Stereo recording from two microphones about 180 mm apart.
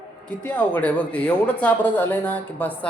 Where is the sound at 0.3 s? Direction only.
10° left (ahead or behind).